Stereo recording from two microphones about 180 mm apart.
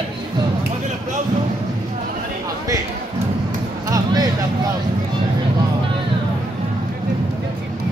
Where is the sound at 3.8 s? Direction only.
20° right (ahead or behind).